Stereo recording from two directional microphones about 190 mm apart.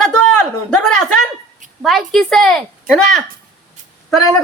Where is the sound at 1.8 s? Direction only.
Centre (ahead or behind).